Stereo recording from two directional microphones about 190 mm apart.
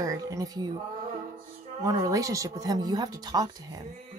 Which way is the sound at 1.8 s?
15° right (ahead or behind).